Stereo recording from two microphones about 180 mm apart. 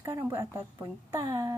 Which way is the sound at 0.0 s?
15° right (ahead or behind).